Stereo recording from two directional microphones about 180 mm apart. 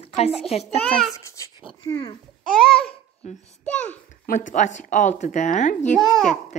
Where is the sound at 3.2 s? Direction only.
40° left (ahead or behind).